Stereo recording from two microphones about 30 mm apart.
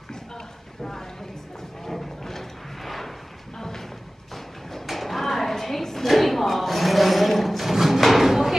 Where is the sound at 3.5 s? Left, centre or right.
Centre.